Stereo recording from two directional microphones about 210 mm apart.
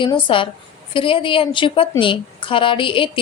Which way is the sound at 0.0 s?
25° left (ahead or behind).